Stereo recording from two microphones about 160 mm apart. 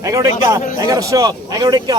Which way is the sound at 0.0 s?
20° right (ahead or behind).